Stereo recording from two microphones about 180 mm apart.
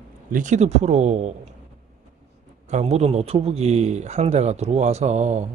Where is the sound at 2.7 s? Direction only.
40° right (ahead or behind).